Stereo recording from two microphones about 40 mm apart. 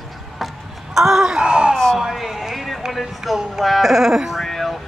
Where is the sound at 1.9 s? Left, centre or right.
Centre.